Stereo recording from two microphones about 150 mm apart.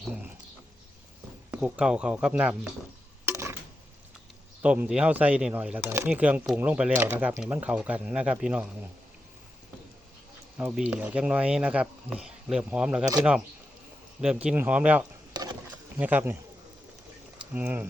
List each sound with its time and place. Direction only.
1.5 s speech: 10° right (ahead or behind)
3.2 s a sound: 20° right (ahead or behind)
4.6 s speech: 5° right (ahead or behind)
10.6 s speech: 5° right (ahead or behind)
15.3 s a sound: 30° right (ahead or behind)
16.0 s speech: 10° right (ahead or behind)
17.5 s speech: 10° right (ahead or behind)